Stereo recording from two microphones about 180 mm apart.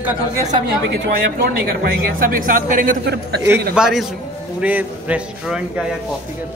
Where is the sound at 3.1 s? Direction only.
65° right (ahead or behind).